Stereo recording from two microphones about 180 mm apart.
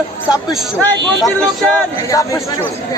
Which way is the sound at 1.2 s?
5° left (ahead or behind).